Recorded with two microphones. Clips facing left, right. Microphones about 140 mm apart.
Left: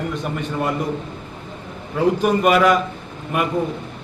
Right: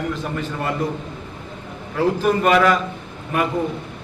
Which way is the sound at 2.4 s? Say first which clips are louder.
Left 1 dB; 10° left (ahead or behind).